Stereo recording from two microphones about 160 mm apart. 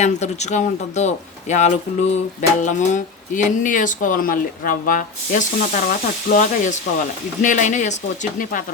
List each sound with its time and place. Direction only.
0.0 s speech: 45° left (ahead or behind)